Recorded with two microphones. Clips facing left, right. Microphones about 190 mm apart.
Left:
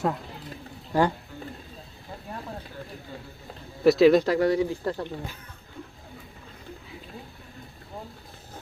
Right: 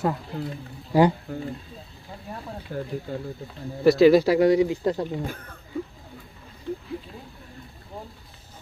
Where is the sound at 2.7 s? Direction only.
55° right (ahead or behind).